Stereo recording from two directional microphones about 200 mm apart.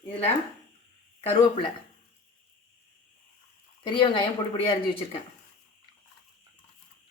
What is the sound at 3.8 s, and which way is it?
Speech, 25° left (ahead or behind).